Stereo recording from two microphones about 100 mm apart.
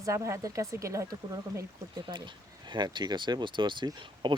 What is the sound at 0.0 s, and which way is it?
Speech, 30° right (ahead or behind).